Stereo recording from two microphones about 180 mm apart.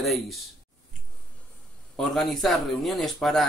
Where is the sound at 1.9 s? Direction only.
Centre (ahead or behind).